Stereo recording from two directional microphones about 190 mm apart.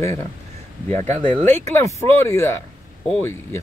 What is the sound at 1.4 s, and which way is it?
Speech, 10° left (ahead or behind).